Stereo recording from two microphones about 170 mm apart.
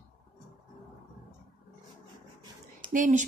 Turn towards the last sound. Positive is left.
turn(degrees=-50)  # may be behind; listen again after turning